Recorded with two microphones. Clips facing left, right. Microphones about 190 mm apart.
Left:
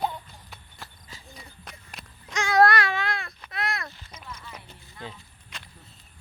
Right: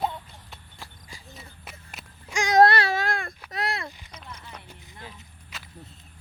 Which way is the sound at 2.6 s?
35° right (ahead or behind).